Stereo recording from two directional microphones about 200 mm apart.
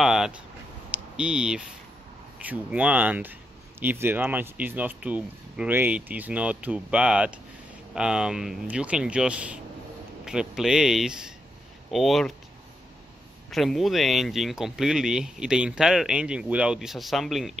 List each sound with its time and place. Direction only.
0.0 s a sound: centre (ahead or behind)
1.1 s speech: 5° right (ahead or behind)
13.5 s speech: centre (ahead or behind)